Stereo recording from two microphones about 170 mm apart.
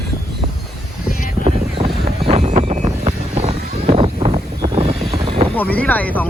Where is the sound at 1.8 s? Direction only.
20° right (ahead or behind).